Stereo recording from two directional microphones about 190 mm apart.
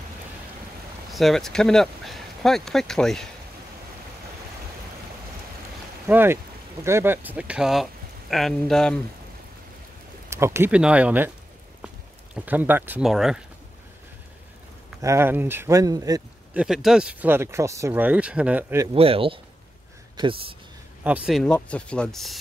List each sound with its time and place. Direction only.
1.1 s speech: centre (ahead or behind)
6.0 s speech: 10° right (ahead or behind)
10.3 s speech: 15° right (ahead or behind)
12.4 s speech: 10° right (ahead or behind)
15.0 s speech: 15° right (ahead or behind)
16.5 s speech: 5° right (ahead or behind)
18.9 s speech: 30° right (ahead or behind)
21.0 s speech: 5° right (ahead or behind)